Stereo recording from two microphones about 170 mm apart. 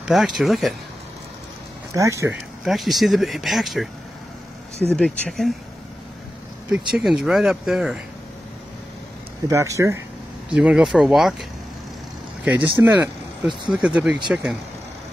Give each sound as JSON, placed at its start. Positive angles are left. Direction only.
{"t": 0.0, "sound": "speech", "side_deg": -5}
{"t": 2.0, "sound": "speech", "side_deg": -15}
{"t": 2.6, "sound": "speech", "side_deg": 0}
{"t": 4.9, "sound": "speech", "side_deg": 5}
{"t": 6.9, "sound": "speech", "side_deg": 0}
{"t": 9.5, "sound": "speech", "side_deg": -20}
{"t": 10.5, "sound": "speech", "side_deg": -5}
{"t": 12.4, "sound": "speech", "side_deg": -10}